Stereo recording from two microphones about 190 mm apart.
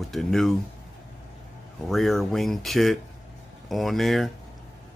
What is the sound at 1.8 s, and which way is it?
Speech, centre (ahead or behind).